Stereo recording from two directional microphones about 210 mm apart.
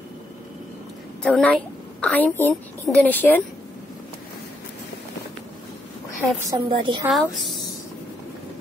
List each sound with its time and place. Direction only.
1.2 s a woman's voice: 5° left (ahead or behind)
6.5 s a woman's voice: 25° right (ahead or behind)
7.1 s a woman's voice: centre (ahead or behind)